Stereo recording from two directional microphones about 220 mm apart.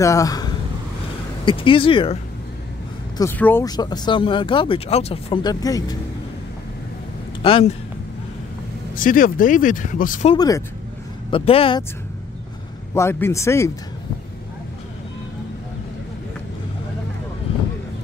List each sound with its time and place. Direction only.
0.0 s speech: 15° left (ahead or behind)
3.2 s speech: 10° left (ahead or behind)
7.4 s speech: 25° left (ahead or behind)
8.9 s speech: 40° left (ahead or behind)
10.3 s a man's voice: 15° left (ahead or behind)
12.9 s a man's voice: 10° left (ahead or behind)